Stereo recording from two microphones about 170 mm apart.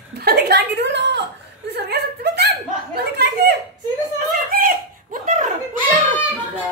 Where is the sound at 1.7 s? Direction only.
75° right (ahead or behind).